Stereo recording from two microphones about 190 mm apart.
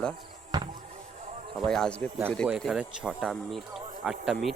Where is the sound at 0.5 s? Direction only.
20° right (ahead or behind).